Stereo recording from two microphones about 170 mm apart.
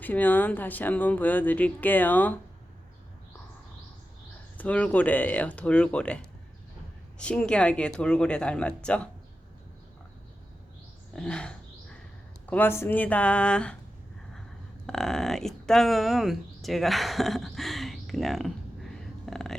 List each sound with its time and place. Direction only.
0.0 s speech: 10° left (ahead or behind)
4.5 s speech: 10° left (ahead or behind)
7.2 s speech: 5° left (ahead or behind)
11.1 s a sound: 5° left (ahead or behind)
12.5 s speech: 10° left (ahead or behind)
14.8 s speech: 5° left (ahead or behind)